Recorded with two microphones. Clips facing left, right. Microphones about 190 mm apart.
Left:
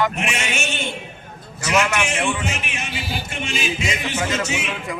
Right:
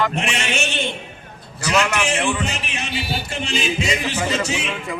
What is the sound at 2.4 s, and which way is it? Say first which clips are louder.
A man's voice: right 1 dB; 35° right (ahead or behind).